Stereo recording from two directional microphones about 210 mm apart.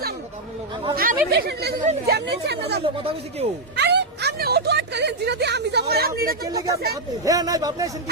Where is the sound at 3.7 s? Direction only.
50° right (ahead or behind).